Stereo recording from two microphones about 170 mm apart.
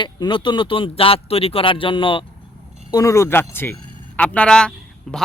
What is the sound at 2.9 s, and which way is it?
A man's voice, 20° left (ahead or behind).